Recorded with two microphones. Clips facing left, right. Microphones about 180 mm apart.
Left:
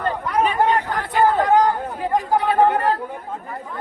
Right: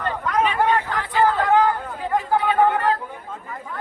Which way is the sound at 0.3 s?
45° left (ahead or behind).